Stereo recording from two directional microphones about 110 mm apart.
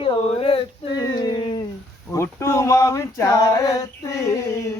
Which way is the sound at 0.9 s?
35° left (ahead or behind).